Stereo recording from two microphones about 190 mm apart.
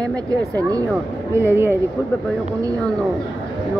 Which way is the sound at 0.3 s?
20° right (ahead or behind).